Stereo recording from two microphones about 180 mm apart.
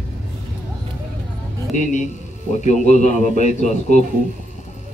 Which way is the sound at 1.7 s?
45° left (ahead or behind).